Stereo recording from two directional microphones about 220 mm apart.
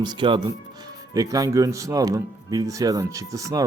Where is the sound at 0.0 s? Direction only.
20° right (ahead or behind).